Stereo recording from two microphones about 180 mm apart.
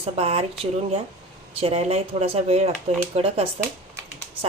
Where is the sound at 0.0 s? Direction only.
35° right (ahead or behind).